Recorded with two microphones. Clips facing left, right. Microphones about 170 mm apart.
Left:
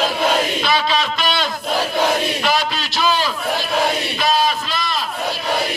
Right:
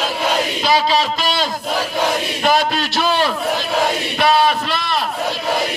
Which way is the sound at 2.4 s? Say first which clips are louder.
Right 4 dB; 55° right (ahead or behind).